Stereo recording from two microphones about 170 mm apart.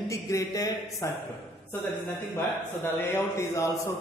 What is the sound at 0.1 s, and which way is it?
Speech, 20° left (ahead or behind).